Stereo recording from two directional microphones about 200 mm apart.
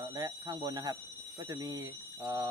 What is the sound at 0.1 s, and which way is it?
Speech, 20° right (ahead or behind).